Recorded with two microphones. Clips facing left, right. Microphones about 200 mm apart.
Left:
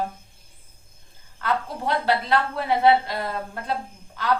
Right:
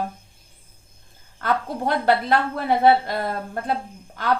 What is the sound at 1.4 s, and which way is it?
A woman's voice, 50° right (ahead or behind).